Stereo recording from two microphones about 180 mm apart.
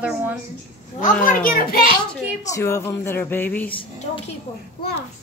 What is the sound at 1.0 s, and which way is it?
Speech, 45° left (ahead or behind).